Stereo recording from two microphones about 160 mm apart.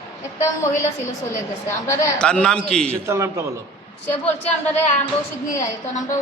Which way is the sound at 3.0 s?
15° right (ahead or behind).